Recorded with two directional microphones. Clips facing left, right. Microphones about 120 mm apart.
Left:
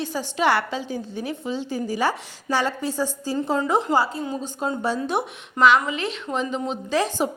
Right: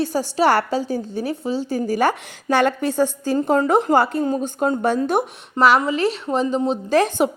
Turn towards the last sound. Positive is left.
turn(degrees=-55)  # may be behind; listen again after turning